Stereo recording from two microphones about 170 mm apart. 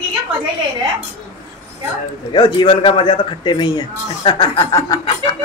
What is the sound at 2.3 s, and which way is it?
A man's voice, 25° left (ahead or behind).